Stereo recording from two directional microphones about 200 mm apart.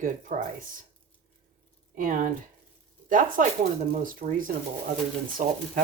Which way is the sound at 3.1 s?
40° right (ahead or behind).